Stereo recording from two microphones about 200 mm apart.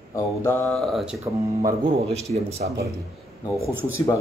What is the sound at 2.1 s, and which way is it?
Speech, 30° right (ahead or behind).